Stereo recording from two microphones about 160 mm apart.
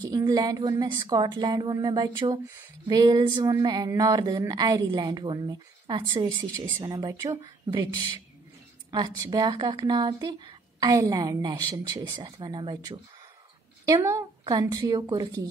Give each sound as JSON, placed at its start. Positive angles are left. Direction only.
{"t": 0.0, "sound": "speech", "side_deg": -25}